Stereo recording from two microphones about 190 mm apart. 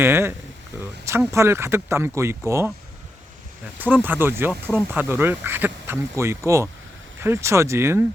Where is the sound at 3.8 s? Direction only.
10° right (ahead or behind).